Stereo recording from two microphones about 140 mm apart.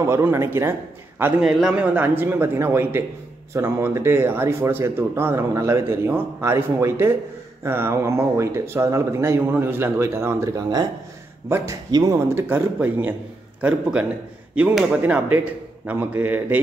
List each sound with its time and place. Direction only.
0.0 s a man's voice: 20° right (ahead or behind)
1.2 s a man's voice: 5° right (ahead or behind)